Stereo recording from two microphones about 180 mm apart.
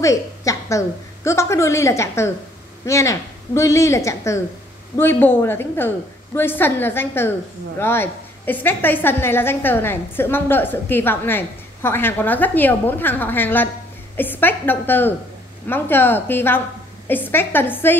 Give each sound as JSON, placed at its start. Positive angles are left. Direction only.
{"t": 0.0, "sound": "a woman's voice", "side_deg": 15}